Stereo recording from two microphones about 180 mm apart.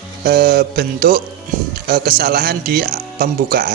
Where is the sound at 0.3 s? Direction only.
60° right (ahead or behind).